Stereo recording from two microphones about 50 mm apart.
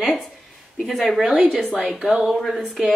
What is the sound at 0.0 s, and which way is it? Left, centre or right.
A woman's voice, centre.